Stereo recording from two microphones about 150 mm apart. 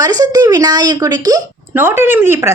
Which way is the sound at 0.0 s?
25° right (ahead or behind).